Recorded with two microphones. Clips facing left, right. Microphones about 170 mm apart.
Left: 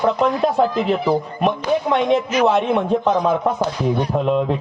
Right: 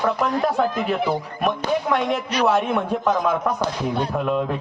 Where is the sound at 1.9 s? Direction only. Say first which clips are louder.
Left 5 dB; 20° left (ahead or behind).